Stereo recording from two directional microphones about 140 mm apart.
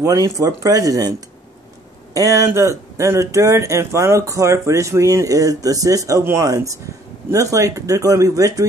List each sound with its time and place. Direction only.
0.0 s speech: 25° right (ahead or behind)
2.1 s speech: 25° right (ahead or behind)